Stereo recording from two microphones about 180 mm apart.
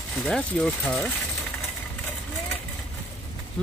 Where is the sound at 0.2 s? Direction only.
5° left (ahead or behind).